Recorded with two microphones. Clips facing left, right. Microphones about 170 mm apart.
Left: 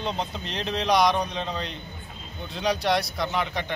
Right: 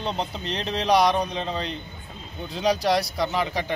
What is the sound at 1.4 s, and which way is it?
Speech, centre (ahead or behind).